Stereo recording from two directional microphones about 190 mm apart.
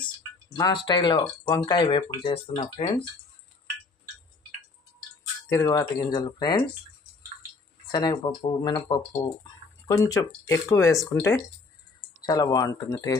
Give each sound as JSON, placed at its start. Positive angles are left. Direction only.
{"t": 0.0, "sound": "a sound", "side_deg": 20}
{"t": 0.8, "sound": "speech", "side_deg": 25}
{"t": 5.5, "sound": "speech", "side_deg": 20}
{"t": 7.8, "sound": "speech", "side_deg": 20}